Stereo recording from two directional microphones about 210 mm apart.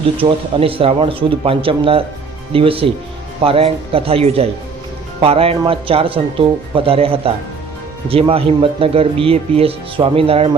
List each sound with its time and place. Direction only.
0.2 s speech: 25° right (ahead or behind)